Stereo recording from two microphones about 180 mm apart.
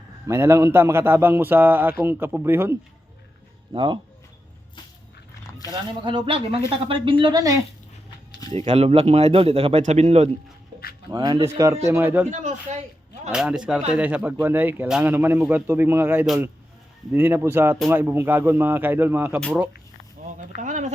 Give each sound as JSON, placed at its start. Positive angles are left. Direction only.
{"t": 0.3, "sound": "speech", "side_deg": -15}
{"t": 3.7, "sound": "speech", "side_deg": -25}
{"t": 5.4, "sound": "roaring cats", "side_deg": 20}
{"t": 6.1, "sound": "speech", "side_deg": -30}
{"t": 8.4, "sound": "speech", "side_deg": -35}
{"t": 11.1, "sound": "speech", "side_deg": -25}
{"t": 12.3, "sound": "speech", "side_deg": -40}
{"t": 13.3, "sound": "speech", "side_deg": -5}
{"t": 20.6, "sound": "a sound", "side_deg": -45}